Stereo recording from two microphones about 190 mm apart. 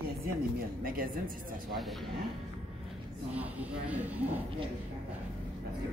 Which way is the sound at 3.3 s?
10° right (ahead or behind).